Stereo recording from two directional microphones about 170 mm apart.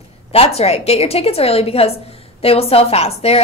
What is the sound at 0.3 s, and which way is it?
A woman's voice, 35° left (ahead or behind).